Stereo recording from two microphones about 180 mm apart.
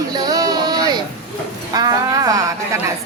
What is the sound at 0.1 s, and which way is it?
Music, 20° right (ahead or behind).